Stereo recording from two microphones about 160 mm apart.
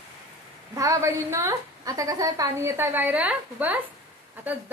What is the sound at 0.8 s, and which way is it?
A woman's voice, 20° right (ahead or behind).